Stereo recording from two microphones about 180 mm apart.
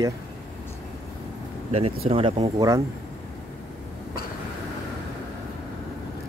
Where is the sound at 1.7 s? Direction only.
35° right (ahead or behind).